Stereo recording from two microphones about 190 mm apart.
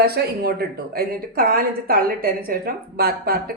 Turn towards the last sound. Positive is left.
turn(degrees=-55)  # may be behind; listen again after turning